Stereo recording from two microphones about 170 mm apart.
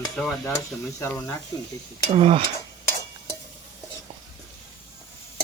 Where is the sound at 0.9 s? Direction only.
20° left (ahead or behind).